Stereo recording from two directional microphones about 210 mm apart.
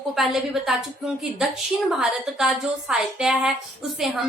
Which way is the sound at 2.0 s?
5° right (ahead or behind).